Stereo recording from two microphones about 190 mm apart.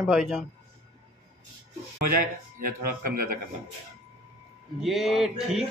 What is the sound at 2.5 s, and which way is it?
Speech, 50° right (ahead or behind).